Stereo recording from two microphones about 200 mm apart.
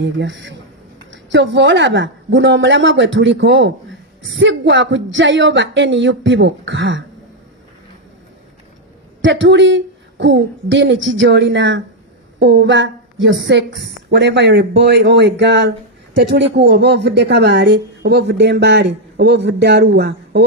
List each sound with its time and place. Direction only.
0.0 s a woman's voice: 60° right (ahead or behind)
9.2 s a woman's voice: 65° right (ahead or behind)